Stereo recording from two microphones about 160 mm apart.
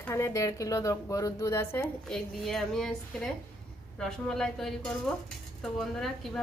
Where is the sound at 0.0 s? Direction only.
20° left (ahead or behind); by 2.9 s centre (ahead or behind).